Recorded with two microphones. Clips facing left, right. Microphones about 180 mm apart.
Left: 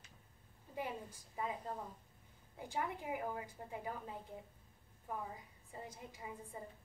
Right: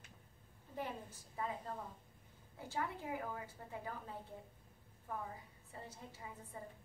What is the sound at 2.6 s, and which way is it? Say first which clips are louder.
A woman's voice: left 1 dB; 15° left (ahead or behind).